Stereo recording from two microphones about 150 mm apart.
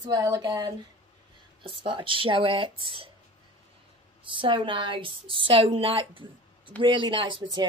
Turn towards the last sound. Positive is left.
turn(degrees=-30)  # may be behind; listen again after turning